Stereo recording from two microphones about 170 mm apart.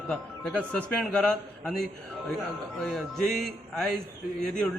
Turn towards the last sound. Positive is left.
turn(degrees=5)  # may be behind; listen again after turning